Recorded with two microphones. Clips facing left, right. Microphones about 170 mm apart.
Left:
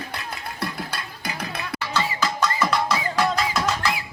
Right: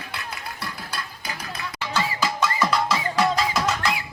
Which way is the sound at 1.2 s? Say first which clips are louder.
Left 3 dB; 60° left (ahead or behind).